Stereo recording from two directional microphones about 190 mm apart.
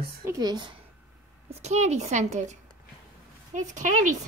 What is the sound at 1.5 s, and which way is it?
A woman's voice, 35° right (ahead or behind).